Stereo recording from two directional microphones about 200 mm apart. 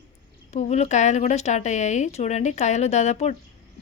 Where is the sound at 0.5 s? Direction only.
35° left (ahead or behind).